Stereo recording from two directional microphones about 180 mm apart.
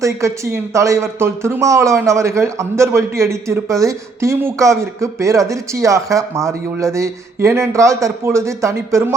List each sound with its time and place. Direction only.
0.0 s speech: 15° right (ahead or behind)